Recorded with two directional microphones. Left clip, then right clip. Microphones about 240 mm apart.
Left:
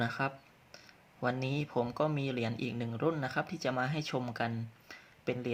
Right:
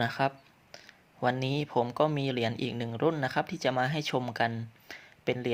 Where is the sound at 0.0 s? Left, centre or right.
Right.